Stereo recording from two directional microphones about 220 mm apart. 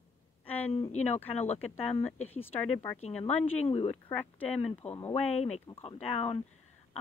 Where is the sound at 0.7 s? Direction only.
30° left (ahead or behind).